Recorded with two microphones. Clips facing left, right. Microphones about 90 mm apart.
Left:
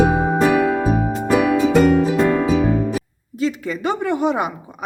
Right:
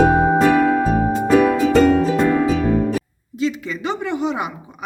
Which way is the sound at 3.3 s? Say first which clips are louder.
Left 1 dB; 45° left (ahead or behind).